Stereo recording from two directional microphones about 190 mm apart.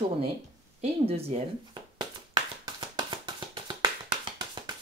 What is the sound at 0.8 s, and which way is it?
Clapping, 30° right (ahead or behind).